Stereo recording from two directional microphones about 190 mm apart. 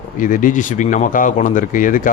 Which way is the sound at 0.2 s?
45° left (ahead or behind).